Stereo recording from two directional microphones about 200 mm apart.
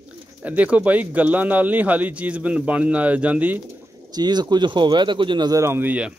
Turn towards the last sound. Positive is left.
turn(degrees=-10)  # may be behind; listen again after turning